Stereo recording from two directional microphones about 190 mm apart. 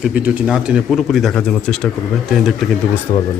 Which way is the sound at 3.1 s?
35° left (ahead or behind).